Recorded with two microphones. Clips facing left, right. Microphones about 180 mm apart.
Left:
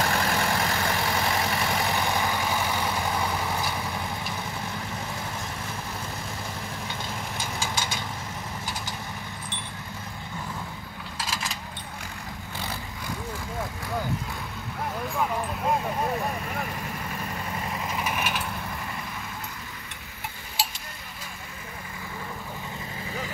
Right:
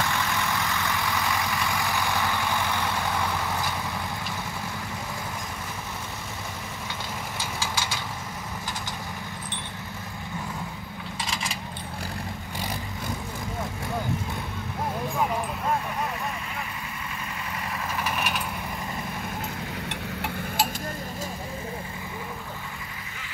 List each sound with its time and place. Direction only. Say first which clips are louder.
0.0 s vehicle: left 2 dB; 35° left (ahead or behind); by 3.7 s 10° left (ahead or behind)
7.3 s vehicle: even; 15° left (ahead or behind)
11.1 s coin: even; centre (ahead or behind)
17.9 s vehicle: right 1 dB; 10° left (ahead or behind)
19.9 s a sound: right 9 dB; 70° right (ahead or behind)